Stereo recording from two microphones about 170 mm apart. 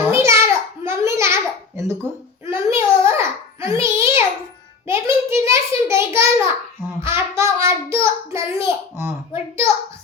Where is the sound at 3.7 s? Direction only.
15° right (ahead or behind).